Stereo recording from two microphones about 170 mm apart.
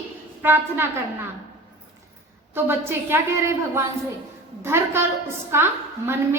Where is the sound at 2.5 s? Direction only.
15° right (ahead or behind).